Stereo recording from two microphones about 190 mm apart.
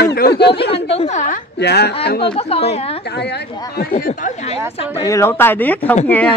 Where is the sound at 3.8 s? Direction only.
50° left (ahead or behind).